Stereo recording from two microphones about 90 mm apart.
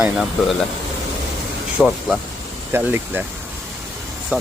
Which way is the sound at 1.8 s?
5° right (ahead or behind).